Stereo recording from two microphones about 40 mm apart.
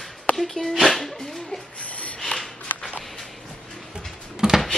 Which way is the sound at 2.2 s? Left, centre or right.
Centre.